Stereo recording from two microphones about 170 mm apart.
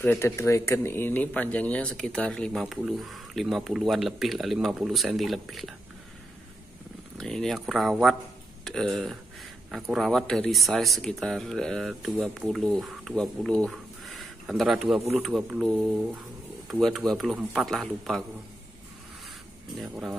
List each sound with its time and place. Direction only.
0.0 s speech: 10° left (ahead or behind)
7.2 s speech: 5° left (ahead or behind)
19.8 s speech: centre (ahead or behind)